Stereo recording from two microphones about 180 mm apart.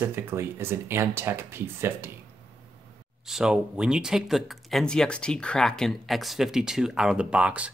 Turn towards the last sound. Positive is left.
turn(degrees=-5)  # may be behind; listen again after turning